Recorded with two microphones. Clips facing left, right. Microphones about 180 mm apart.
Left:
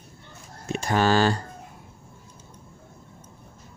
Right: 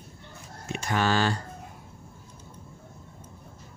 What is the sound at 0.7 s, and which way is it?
Speech, 35° left (ahead or behind).